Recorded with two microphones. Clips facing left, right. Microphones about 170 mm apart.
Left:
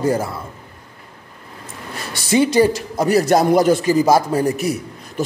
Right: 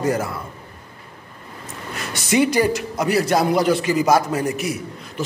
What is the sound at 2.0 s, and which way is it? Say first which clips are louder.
A man's voice: left 2 dB; 30° left (ahead or behind).